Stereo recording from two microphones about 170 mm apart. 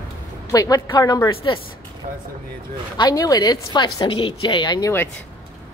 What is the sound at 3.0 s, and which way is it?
A woman's voice, 20° left (ahead or behind).